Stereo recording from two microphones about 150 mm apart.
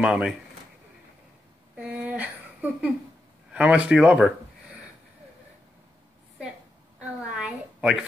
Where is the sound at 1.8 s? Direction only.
10° right (ahead or behind).